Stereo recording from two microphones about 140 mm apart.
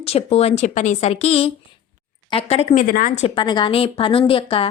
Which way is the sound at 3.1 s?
40° left (ahead or behind).